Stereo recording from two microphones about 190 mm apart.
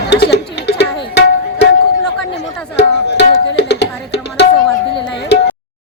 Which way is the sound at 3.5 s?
65° left (ahead or behind).